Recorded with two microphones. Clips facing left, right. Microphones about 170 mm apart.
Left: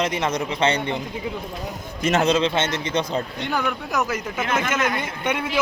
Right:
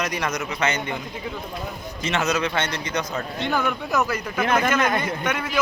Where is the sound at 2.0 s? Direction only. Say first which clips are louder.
Left 5 dB; 40° left (ahead or behind).